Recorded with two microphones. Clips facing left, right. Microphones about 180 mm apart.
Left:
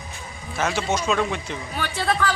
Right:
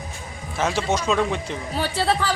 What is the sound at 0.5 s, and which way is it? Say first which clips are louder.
Speech: right 1 dB; centre (ahead or behind).